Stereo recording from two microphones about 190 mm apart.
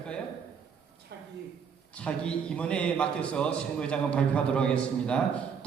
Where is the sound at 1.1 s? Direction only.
60° right (ahead or behind).